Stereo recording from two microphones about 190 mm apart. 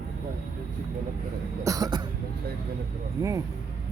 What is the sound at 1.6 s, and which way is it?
Cough, 20° right (ahead or behind).